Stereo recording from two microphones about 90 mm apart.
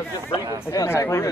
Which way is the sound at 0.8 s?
30° left (ahead or behind).